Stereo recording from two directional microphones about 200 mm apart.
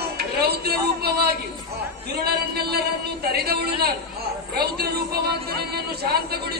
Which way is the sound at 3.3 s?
50° right (ahead or behind).